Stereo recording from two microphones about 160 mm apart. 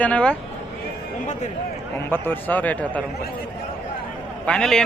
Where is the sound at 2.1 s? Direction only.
15° left (ahead or behind).